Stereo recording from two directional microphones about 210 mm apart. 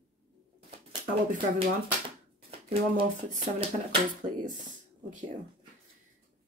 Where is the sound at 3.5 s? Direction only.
25° right (ahead or behind).